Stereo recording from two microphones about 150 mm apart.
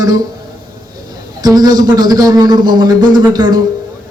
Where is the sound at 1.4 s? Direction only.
25° right (ahead or behind).